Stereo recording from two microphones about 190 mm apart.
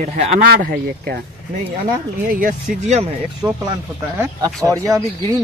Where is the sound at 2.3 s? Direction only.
45° right (ahead or behind).